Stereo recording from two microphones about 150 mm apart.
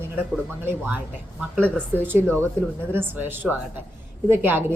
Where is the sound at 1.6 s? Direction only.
10° left (ahead or behind).